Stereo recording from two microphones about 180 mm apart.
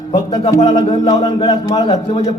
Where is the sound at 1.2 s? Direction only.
25° left (ahead or behind).